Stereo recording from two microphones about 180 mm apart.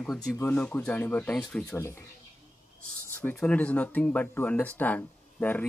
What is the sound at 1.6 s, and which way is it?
Speech, 15° left (ahead or behind).